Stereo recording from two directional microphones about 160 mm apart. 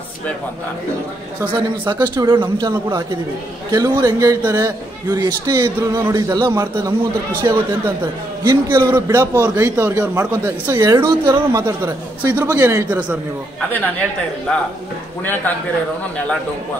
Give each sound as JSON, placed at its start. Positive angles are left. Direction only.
{"t": 1.5, "sound": "a man's voice", "side_deg": -25}